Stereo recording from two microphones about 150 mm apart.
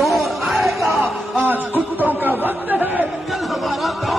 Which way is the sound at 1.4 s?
10° right (ahead or behind).